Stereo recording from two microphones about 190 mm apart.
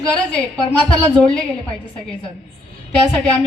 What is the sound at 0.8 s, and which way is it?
Speech, 5° left (ahead or behind).